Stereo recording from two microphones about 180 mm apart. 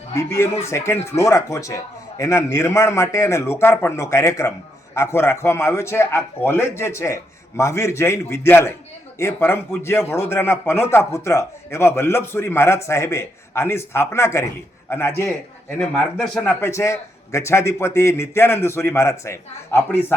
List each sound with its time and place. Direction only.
0.1 s a man's voice: 15° left (ahead or behind)
15.8 s a man's voice: centre (ahead or behind)